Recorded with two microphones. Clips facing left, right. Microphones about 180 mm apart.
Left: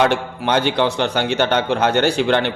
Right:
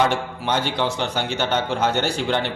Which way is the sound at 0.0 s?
65° left (ahead or behind).